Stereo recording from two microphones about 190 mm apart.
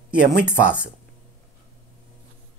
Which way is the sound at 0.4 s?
5° right (ahead or behind).